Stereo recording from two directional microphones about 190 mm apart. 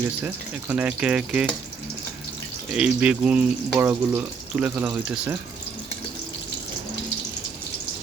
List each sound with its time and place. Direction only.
0.0 s speech: 10° right (ahead or behind)
2.7 s speech: 5° right (ahead or behind)